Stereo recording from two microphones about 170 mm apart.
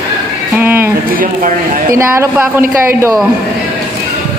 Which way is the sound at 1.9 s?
15° right (ahead or behind).